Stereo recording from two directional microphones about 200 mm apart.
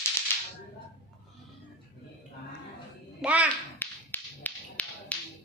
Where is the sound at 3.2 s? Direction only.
5° right (ahead or behind).